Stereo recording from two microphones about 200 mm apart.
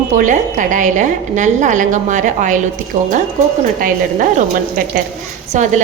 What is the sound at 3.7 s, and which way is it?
A woman's voice, 45° right (ahead or behind).